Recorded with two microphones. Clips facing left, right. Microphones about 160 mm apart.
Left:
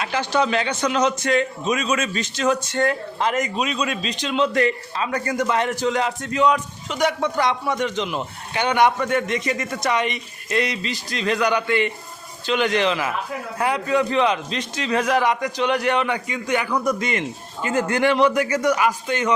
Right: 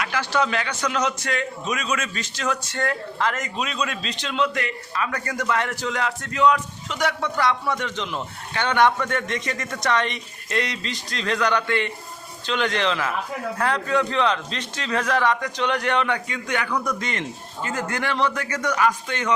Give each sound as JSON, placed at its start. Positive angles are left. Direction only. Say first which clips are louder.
{"t": 0.0, "sound": "a man's voice", "louder": "left 2 dB", "side_deg": 25}
{"t": 4.5, "sound": "a man's voice", "louder": "left 7 dB", "side_deg": 35}
{"t": 5.0, "sound": "a man's voice", "louder": "left 5 dB", "side_deg": 20}